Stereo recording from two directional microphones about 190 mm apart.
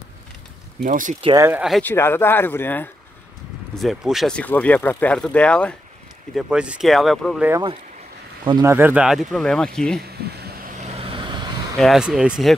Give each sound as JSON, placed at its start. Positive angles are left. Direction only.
{"t": 0.8, "sound": "speech", "side_deg": -45}
{"t": 1.2, "sound": "speech", "side_deg": -15}
{"t": 1.8, "sound": "speech", "side_deg": 10}
{"t": 3.7, "sound": "speech", "side_deg": 0}
{"t": 6.3, "sound": "speech", "side_deg": -5}
{"t": 8.5, "sound": "speech", "side_deg": -20}
{"t": 10.2, "sound": "vehicle", "side_deg": -55}
{"t": 11.8, "sound": "speech", "side_deg": 0}